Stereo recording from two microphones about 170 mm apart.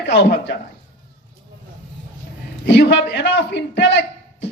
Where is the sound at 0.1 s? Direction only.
90° left.